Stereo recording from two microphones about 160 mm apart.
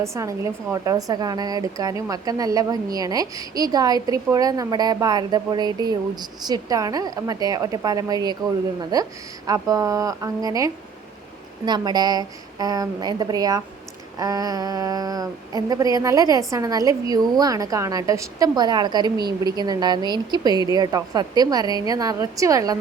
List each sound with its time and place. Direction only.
0.0 s speech: 20° right (ahead or behind)